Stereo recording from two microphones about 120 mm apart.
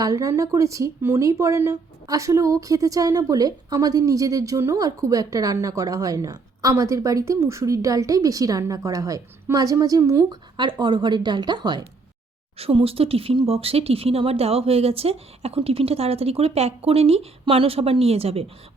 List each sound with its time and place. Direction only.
0.0 s speech: 30° right (ahead or behind)
10.6 s a woman's voice: 40° right (ahead or behind)
12.5 s speech: 55° right (ahead or behind)